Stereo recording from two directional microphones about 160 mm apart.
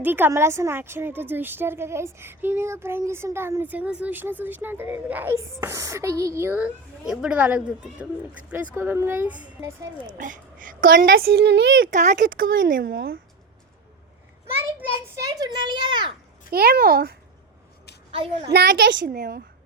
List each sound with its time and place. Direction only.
0.0 s a woman's voice: 15° right (ahead or behind)
10.1 s a woman's voice: 55° right (ahead or behind); by 13.1 s 70° right (ahead or behind)
15.2 s a child's voice: 25° right (ahead or behind)
16.5 s a child's voice: 75° right (ahead or behind)
18.5 s a child's voice: 85° right